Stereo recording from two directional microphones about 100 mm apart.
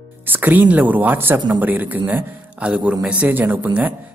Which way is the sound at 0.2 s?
20° right (ahead or behind).